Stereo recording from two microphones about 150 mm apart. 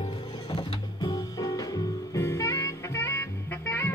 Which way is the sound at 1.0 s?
25° left (ahead or behind).